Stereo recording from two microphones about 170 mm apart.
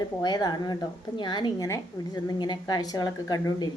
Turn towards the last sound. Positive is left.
turn(degrees=25)  # may be behind; listen again after turning